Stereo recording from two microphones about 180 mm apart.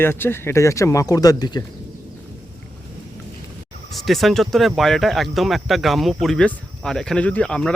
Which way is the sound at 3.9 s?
Centre (ahead or behind).